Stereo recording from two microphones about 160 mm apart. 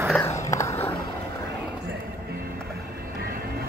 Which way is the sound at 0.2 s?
20° left (ahead or behind).